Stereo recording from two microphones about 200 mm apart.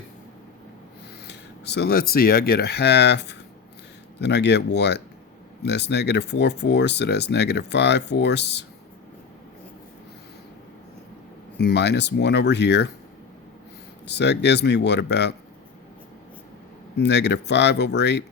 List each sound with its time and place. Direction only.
1.3 s speech: 55° left (ahead or behind)
11.5 s speech: 55° left (ahead or behind)
14.1 s speech: 60° left (ahead or behind)
17.0 s speech: 60° left (ahead or behind)